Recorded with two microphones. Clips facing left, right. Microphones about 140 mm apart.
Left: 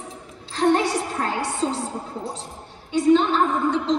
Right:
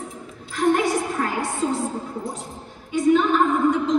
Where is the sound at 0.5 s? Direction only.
30° left (ahead or behind).